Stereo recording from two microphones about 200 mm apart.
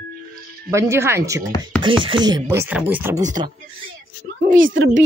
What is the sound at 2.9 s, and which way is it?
Speech, 10° right (ahead or behind).